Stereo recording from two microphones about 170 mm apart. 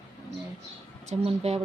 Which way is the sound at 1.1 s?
35° right (ahead or behind).